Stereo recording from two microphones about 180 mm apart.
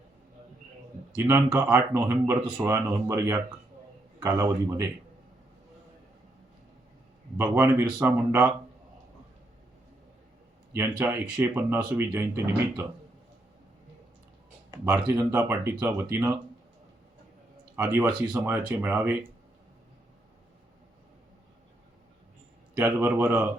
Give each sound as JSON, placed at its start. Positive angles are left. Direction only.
{"t": 1.3, "sound": "speech", "side_deg": -15}
{"t": 7.3, "sound": "speech", "side_deg": -10}
{"t": 10.8, "sound": "speech", "side_deg": -15}
{"t": 14.8, "sound": "speech", "side_deg": -5}
{"t": 17.7, "sound": "speech", "side_deg": -15}
{"t": 22.8, "sound": "speech", "side_deg": -10}